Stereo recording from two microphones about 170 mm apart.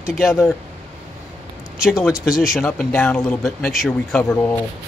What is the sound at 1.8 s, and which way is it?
Speech, 5° right (ahead or behind).